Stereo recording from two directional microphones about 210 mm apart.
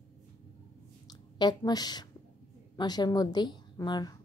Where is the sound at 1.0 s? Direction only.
20° left (ahead or behind).